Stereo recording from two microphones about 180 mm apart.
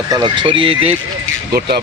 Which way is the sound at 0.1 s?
25° right (ahead or behind).